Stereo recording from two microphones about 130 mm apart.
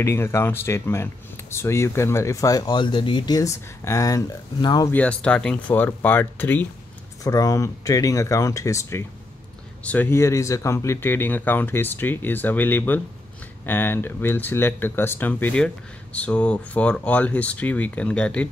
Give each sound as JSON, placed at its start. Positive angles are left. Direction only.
{"t": 0.0, "sound": "speech", "side_deg": 20}
{"t": 4.9, "sound": "speech", "side_deg": 10}
{"t": 7.2, "sound": "speech", "side_deg": 30}